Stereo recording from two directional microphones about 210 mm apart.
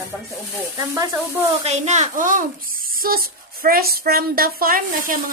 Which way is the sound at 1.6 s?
30° right (ahead or behind).